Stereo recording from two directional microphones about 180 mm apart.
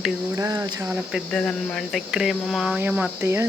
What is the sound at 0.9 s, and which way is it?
Speech, centre (ahead or behind).